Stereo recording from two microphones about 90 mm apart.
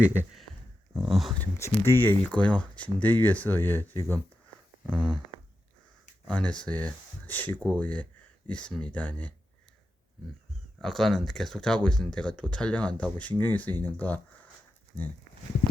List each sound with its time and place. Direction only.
0.0 s speech: 20° right (ahead or behind)
1.0 s speech: centre (ahead or behind)
1.5 s speech: 30° left (ahead or behind)
6.2 s speech: 10° left (ahead or behind)
10.8 s speech: 5° left (ahead or behind)